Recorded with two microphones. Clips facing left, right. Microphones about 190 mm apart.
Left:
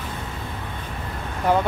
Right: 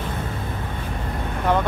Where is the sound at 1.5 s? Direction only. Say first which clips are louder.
Left 1 dB; 10° left (ahead or behind).